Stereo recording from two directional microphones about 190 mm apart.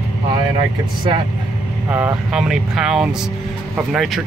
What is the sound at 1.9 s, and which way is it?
Speech, 5° right (ahead or behind).